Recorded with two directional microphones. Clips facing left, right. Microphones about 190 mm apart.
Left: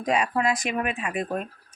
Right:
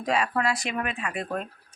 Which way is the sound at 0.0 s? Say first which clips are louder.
Left 2 dB; 15° left (ahead or behind).